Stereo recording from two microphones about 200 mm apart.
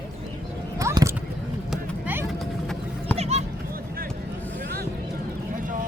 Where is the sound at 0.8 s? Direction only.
15° right (ahead or behind).